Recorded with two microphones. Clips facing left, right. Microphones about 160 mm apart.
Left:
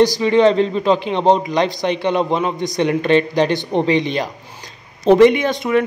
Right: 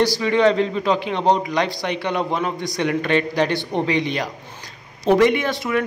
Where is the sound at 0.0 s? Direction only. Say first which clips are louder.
Left 4 dB; 20° left (ahead or behind).